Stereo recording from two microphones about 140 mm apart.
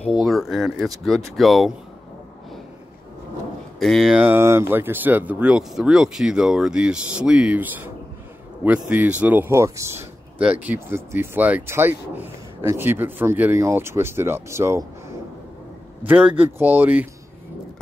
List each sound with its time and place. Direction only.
0.2 s speech: centre (ahead or behind)
3.8 s speech: centre (ahead or behind)
4.2 s speech: 15° right (ahead or behind)
16.0 s speech: 10° right (ahead or behind)